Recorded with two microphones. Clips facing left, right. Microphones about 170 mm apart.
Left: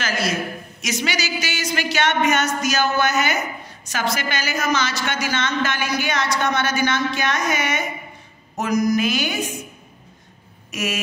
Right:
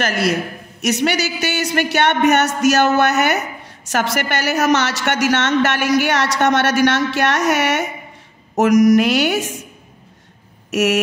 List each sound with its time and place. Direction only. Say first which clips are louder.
0.0 s a woman's voice: right 5 dB; 65° right (ahead or behind)
8.5 s speech: right 8 dB; 90° right
10.7 s a sound: right 10 dB; 75° right (ahead or behind)